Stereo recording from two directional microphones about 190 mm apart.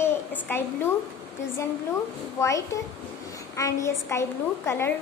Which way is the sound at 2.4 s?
15° left (ahead or behind).